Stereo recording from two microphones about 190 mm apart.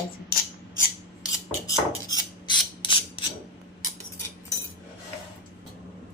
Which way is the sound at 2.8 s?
25° left (ahead or behind).